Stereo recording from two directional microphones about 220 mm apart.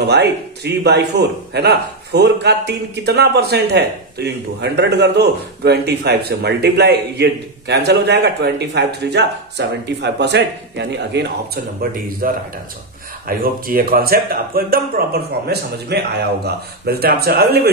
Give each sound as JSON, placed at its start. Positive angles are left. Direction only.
{"t": 0.0, "sound": "a man's voice", "side_deg": -50}
{"t": 13.4, "sound": "a man's voice", "side_deg": -40}